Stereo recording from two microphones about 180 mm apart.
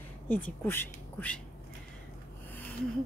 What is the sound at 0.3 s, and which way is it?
Speech, 10° left (ahead or behind).